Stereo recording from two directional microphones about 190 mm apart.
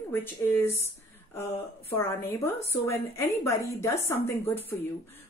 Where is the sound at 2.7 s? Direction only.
15° left (ahead or behind).